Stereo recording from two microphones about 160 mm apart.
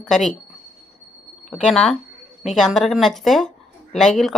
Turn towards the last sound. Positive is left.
turn(degrees=0)  # may be behind; listen again after turning